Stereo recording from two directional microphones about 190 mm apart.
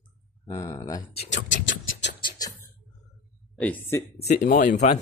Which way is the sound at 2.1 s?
20° left (ahead or behind).